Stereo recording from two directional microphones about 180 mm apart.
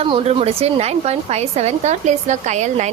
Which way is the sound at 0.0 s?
30° right (ahead or behind).